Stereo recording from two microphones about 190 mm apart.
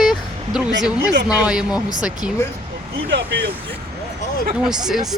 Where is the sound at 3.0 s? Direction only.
60° right (ahead or behind).